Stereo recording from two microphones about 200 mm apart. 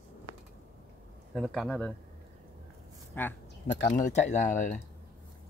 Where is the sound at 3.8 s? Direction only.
35° left (ahead or behind).